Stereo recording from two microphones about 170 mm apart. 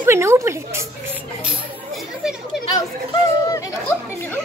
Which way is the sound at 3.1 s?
20° left (ahead or behind).